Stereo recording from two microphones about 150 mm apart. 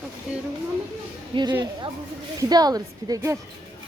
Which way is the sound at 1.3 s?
35° right (ahead or behind).